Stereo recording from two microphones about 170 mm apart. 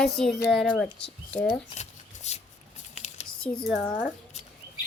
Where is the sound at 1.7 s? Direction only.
40° left (ahead or behind).